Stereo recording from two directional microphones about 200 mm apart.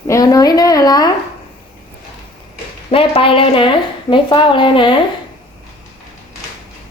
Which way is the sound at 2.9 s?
25° left (ahead or behind).